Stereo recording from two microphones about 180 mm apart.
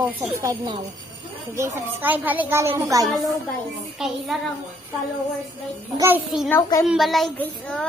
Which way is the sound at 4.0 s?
Centre (ahead or behind).